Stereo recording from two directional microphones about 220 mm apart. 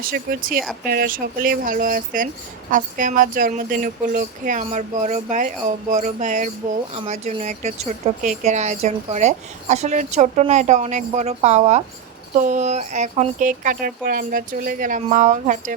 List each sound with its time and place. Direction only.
0.0 s speech: 40° right (ahead or behind)